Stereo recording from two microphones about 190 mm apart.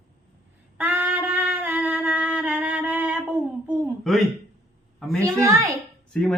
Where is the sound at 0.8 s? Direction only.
10° right (ahead or behind).